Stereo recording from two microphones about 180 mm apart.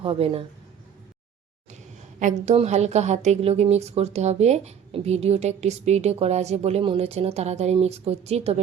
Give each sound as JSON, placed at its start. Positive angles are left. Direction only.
{"t": 0.0, "sound": "a woman's voice", "side_deg": -30}
{"t": 2.1, "sound": "a woman's voice", "side_deg": -40}